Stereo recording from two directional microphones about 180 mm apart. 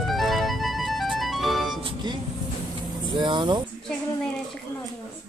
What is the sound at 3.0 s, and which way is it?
Vehicle, 25° right (ahead or behind).